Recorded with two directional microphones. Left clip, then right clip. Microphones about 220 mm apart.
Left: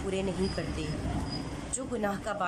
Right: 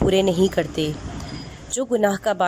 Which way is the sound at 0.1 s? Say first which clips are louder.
Right 11 dB; 40° right (ahead or behind).